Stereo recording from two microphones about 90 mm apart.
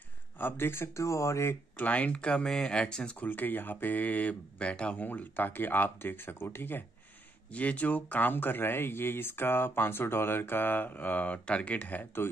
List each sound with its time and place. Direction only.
0.4 s speech: 25° left (ahead or behind)
1.9 s speech: 15° left (ahead or behind)